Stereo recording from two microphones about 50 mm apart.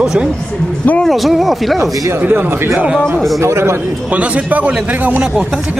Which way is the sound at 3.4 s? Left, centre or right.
Right.